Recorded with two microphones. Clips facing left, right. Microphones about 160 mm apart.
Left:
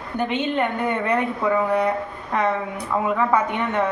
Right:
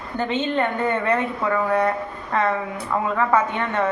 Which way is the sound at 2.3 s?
15° left (ahead or behind).